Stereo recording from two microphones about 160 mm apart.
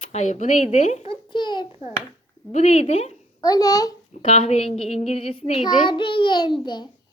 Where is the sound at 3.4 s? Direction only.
20° left (ahead or behind).